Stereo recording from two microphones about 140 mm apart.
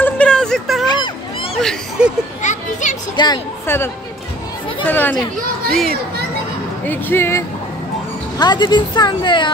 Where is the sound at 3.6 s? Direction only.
15° left (ahead or behind).